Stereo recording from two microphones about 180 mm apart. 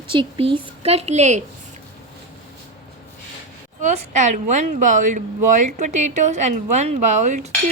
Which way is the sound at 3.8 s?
40° right (ahead or behind).